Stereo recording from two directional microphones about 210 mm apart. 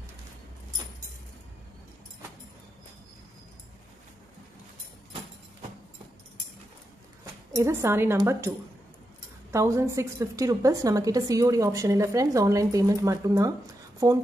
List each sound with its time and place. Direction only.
7.5 s a woman's voice: 15° right (ahead or behind)
9.5 s a woman's voice: 15° right (ahead or behind)